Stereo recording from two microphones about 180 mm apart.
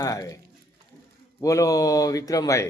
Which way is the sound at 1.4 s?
20° left (ahead or behind).